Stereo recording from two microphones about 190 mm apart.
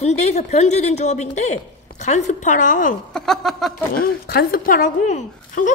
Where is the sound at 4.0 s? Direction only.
50° left (ahead or behind).